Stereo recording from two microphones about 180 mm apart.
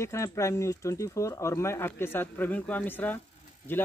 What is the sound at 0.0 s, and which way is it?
Speech, 15° left (ahead or behind).